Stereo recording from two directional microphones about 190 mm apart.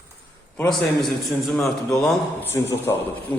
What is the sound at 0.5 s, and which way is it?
A man's voice, 5° left (ahead or behind).